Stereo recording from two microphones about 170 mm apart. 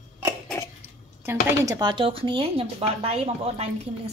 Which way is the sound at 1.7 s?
25° right (ahead or behind).